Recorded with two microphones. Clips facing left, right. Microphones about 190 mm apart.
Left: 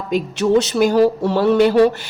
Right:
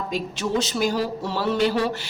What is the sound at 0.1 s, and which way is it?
A woman's voice, 65° left (ahead or behind).